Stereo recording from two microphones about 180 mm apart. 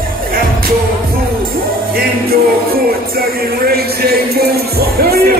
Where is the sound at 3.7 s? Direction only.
60° right (ahead or behind).